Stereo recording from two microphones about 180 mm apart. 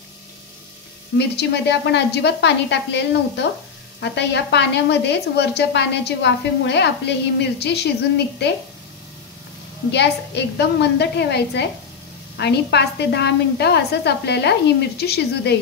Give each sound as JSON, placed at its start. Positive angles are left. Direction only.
{"t": 1.1, "sound": "a woman's voice", "side_deg": 70}
{"t": 9.8, "sound": "a woman's voice", "side_deg": 70}